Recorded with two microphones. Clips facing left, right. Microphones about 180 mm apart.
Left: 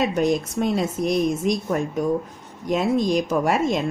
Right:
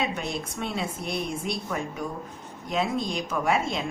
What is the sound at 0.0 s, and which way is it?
A woman's voice, 40° left (ahead or behind).